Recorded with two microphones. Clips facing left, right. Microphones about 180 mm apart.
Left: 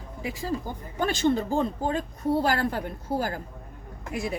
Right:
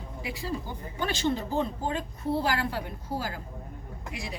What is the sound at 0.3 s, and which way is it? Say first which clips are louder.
A woman's voice: left 4 dB; 45° left (ahead or behind).